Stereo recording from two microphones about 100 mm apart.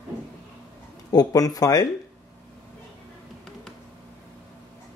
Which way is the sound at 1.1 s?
40° left (ahead or behind).